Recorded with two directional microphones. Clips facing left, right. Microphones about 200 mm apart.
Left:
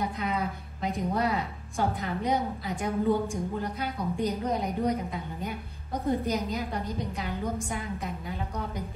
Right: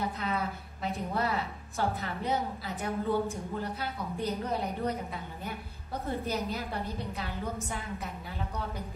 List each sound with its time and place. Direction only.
0.8 s a woman's voice: 15° left (ahead or behind)
6.0 s a woman's voice: 15° left (ahead or behind)